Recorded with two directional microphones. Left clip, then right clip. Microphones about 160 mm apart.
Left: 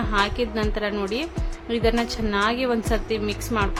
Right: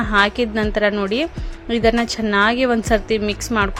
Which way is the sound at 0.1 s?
40° right (ahead or behind).